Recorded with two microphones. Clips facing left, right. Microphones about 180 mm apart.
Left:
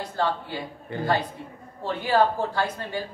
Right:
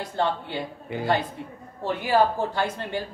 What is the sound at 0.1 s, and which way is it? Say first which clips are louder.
A woman's voice: right 1 dB; 20° right (ahead or behind).